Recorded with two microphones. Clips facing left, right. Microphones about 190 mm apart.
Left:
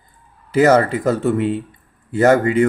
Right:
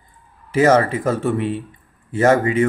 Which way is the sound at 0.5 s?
40° left (ahead or behind).